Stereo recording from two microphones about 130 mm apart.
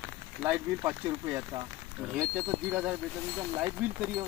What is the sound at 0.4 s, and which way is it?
Speech, 15° right (ahead or behind).